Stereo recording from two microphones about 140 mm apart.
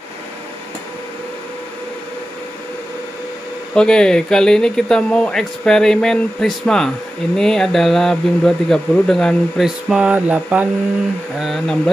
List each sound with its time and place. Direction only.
3.7 s speech: 5° left (ahead or behind)